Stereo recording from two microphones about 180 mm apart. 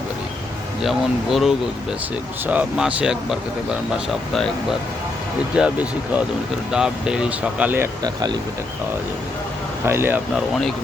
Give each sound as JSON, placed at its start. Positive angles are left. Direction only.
{"t": 0.8, "sound": "speech", "side_deg": 0}
{"t": 4.4, "sound": "speech", "side_deg": 5}
{"t": 8.0, "sound": "speech", "side_deg": -20}
{"t": 9.8, "sound": "speech", "side_deg": -15}
{"t": 10.5, "sound": "speech", "side_deg": 0}